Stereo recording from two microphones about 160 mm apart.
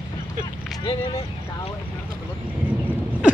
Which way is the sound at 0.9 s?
35° left (ahead or behind).